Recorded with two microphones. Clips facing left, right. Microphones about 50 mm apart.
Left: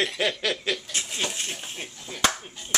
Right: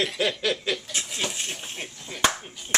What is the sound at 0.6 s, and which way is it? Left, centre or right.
Snicker, centre.